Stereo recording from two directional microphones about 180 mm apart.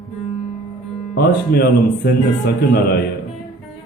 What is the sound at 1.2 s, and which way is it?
Speech, 60° left (ahead or behind).